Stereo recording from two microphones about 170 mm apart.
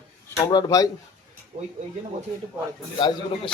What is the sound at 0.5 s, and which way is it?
Speech, 20° left (ahead or behind).